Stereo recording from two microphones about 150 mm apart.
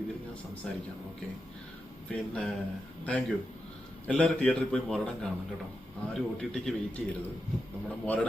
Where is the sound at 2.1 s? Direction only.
5° left (ahead or behind).